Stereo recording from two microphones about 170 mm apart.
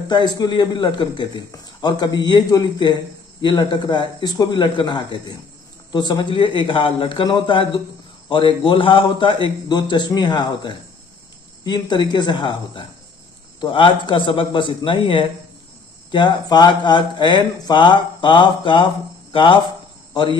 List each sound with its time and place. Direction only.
0.1 s a man's voice: 25° left (ahead or behind)